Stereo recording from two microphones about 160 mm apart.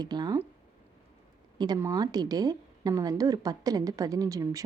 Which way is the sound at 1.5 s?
25° right (ahead or behind).